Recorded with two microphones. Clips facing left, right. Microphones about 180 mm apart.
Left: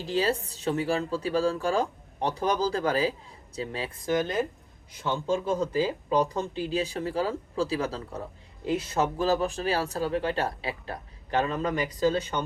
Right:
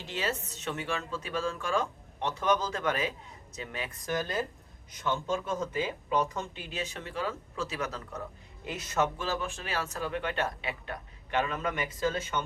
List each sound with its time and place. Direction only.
0.0 s speech: 35° left (ahead or behind); by 4.4 s 20° left (ahead or behind)
5.0 s speech: 30° left (ahead or behind)